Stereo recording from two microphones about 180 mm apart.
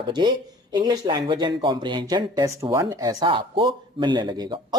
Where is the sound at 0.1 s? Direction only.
25° right (ahead or behind).